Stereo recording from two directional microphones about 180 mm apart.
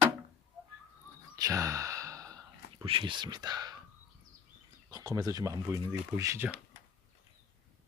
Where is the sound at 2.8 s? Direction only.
30° right (ahead or behind).